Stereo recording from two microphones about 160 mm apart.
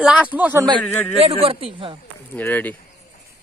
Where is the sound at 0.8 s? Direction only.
5° left (ahead or behind).